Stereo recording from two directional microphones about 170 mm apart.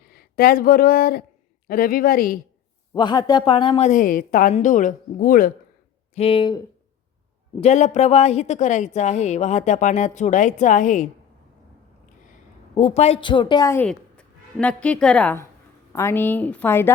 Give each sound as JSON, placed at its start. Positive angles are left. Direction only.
{"t": 0.1, "sound": "speech", "side_deg": 65}
{"t": 2.9, "sound": "a woman's voice", "side_deg": 25}
{"t": 6.1, "sound": "a woman's voice", "side_deg": 30}
{"t": 7.6, "sound": "a woman's voice", "side_deg": 40}
{"t": 12.7, "sound": "a woman's voice", "side_deg": 40}
{"t": 13.8, "sound": "a woman's voice", "side_deg": 5}